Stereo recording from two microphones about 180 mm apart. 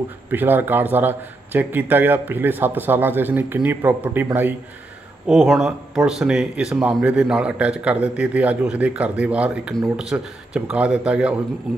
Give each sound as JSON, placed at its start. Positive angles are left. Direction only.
{"t": 0.3, "sound": "speech", "side_deg": -10}